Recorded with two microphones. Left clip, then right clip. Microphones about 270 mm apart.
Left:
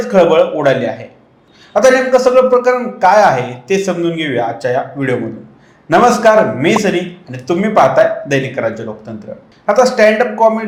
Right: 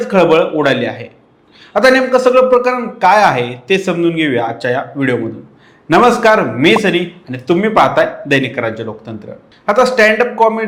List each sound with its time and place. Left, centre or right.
0.0 s speech: right